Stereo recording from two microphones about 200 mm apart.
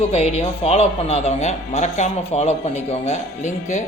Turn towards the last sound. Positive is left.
turn(degrees=35)  # may be behind; listen again after turning